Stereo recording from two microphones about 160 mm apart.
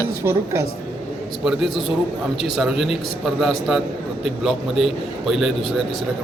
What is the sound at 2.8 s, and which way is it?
A man's voice, centre (ahead or behind).